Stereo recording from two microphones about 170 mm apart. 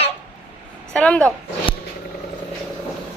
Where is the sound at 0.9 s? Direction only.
5° left (ahead or behind).